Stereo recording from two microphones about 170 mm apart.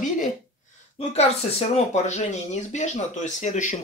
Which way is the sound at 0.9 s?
40° left (ahead or behind).